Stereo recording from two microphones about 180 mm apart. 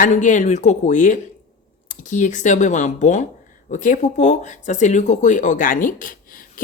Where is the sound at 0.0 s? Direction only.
45° left (ahead or behind).